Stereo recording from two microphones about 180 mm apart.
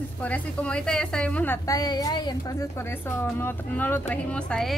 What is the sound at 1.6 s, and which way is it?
A man's voice, 20° left (ahead or behind).